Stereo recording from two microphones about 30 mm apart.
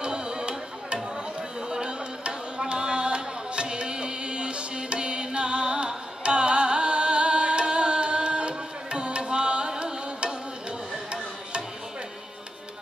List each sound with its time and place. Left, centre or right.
0.0 s music: right
4.9 s carnatic music: right